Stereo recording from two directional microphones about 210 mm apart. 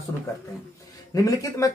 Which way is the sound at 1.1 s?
15° left (ahead or behind).